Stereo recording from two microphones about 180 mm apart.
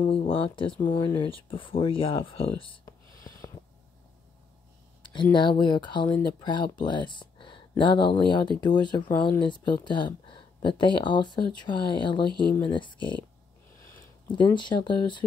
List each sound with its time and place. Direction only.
0.0 s speech: 30° left (ahead or behind)
2.6 s a sound: 20° left (ahead or behind)
5.3 s speech: 25° left (ahead or behind)
14.3 s speech: 25° left (ahead or behind)